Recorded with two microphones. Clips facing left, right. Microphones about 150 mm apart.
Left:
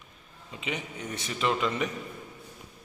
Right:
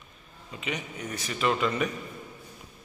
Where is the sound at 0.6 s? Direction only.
25° left (ahead or behind).